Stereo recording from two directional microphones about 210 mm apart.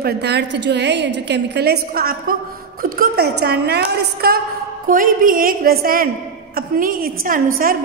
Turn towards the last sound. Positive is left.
turn(degrees=-40)  # may be behind; listen again after turning